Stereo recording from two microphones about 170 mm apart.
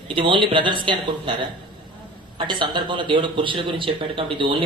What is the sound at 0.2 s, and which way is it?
A man's voice, 30° right (ahead or behind).